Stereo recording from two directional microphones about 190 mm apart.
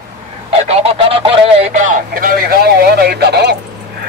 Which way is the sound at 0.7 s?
30° right (ahead or behind).